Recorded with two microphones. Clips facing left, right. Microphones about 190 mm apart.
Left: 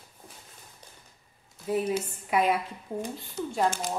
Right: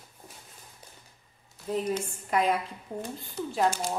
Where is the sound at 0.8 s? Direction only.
10° right (ahead or behind).